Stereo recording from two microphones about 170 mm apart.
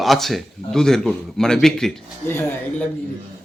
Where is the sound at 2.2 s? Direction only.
15° left (ahead or behind).